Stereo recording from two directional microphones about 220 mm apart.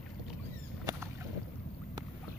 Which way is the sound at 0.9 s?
15° right (ahead or behind).